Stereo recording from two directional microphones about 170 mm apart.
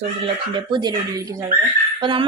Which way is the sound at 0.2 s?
25° right (ahead or behind).